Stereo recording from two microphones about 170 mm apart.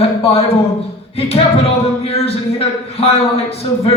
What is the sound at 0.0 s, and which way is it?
Speech, 35° left (ahead or behind).